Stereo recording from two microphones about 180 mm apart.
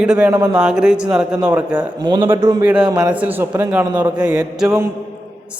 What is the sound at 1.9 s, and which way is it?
Speech, 25° right (ahead or behind).